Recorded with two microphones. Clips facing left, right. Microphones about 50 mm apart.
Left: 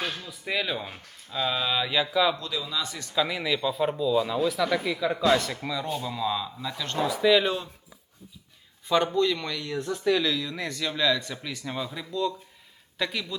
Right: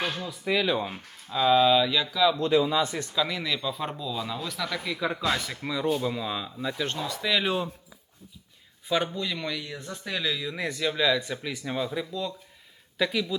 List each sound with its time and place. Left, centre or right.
0.0 s a sound: centre
0.3 s speech: centre
1.8 s a man's voice: centre
2.4 s speech: right
3.2 s a man's voice: centre
4.9 s speech: centre
5.3 s speech: centre
5.6 s speech: centre
7.1 s speech: centre
9.1 s speech: centre